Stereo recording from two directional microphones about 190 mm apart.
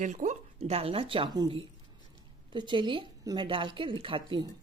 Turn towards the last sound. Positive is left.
turn(degrees=-25)  # may be behind; listen again after turning